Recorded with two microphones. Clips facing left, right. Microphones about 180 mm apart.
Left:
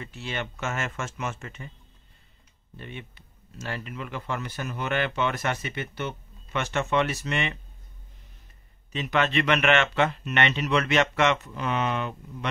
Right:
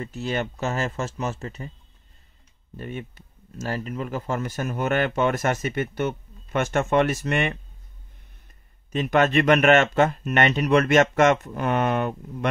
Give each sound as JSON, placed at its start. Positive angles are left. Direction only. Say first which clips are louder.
{"t": 0.0, "sound": "speech", "louder": "right 7 dB", "side_deg": -40}
{"t": 2.8, "sound": "speech", "louder": "right 7 dB", "side_deg": -45}
{"t": 8.9, "sound": "speech", "louder": "right 5 dB", "side_deg": -45}